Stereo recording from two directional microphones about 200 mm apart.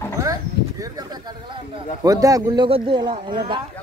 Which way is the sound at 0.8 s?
20° right (ahead or behind).